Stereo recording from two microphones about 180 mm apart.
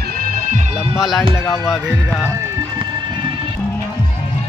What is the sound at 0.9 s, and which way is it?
Speech, centre (ahead or behind).